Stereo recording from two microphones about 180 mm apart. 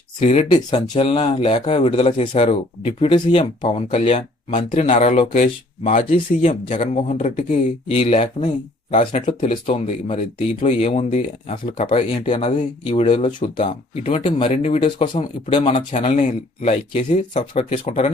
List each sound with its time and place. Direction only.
0.2 s speech: 35° left (ahead or behind)
7.9 s speech: 35° left (ahead or behind)